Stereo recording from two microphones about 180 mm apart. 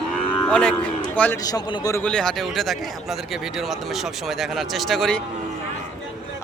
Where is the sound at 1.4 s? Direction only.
25° left (ahead or behind).